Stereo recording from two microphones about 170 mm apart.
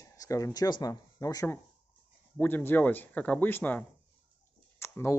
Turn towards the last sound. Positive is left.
turn(degrees=15)  # may be behind; listen again after turning